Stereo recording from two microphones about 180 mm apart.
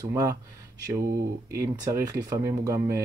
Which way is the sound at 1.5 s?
15° right (ahead or behind).